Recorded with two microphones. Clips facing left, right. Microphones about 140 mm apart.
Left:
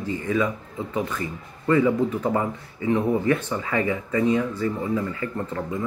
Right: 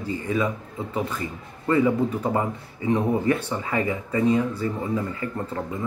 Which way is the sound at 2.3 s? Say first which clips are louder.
Even; 25° right (ahead or behind).